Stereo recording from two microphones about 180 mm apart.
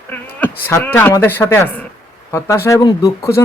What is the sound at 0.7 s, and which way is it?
Speech, 10° left (ahead or behind).